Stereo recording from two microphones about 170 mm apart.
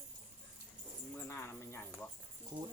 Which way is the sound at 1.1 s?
15° left (ahead or behind).